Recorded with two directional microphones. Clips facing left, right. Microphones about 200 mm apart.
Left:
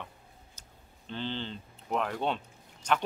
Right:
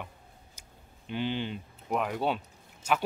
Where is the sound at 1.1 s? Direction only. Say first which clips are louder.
Right 4 dB; 15° right (ahead or behind).